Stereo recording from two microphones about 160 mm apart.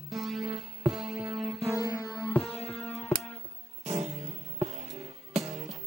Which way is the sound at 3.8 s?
45° right (ahead or behind).